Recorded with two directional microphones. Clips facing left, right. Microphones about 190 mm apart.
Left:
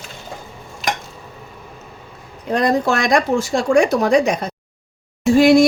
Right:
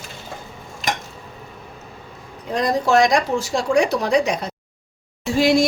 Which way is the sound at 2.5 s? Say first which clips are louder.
Left 1 dB; 60° left (ahead or behind).